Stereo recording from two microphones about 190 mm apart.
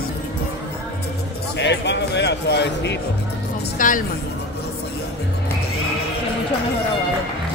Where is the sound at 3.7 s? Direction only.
45° left (ahead or behind).